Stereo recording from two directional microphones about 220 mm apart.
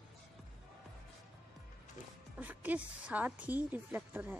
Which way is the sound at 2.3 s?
5° right (ahead or behind).